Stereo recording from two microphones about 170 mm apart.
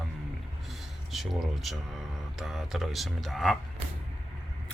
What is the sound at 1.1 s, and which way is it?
Speech, centre (ahead or behind).